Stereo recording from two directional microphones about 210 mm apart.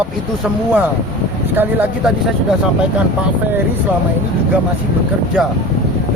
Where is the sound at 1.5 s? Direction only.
10° right (ahead or behind).